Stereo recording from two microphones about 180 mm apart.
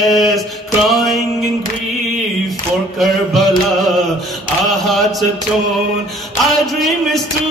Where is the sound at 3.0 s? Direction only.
Centre (ahead or behind).